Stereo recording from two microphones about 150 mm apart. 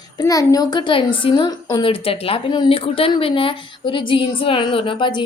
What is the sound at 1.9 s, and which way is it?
A woman's voice, 40° left (ahead or behind).